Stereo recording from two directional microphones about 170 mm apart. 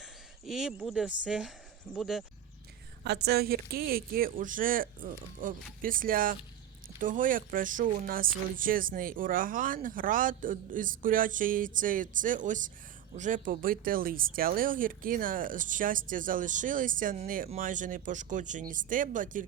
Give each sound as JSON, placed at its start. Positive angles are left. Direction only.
{"t": 0.0, "sound": "speech", "side_deg": 0}
{"t": 3.0, "sound": "speech", "side_deg": -75}